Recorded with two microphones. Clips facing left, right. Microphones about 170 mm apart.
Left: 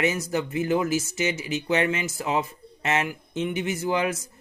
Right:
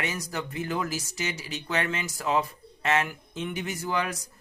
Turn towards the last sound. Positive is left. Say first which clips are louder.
# left 5 dB
turn(degrees=20)  # may be behind; listen again after turning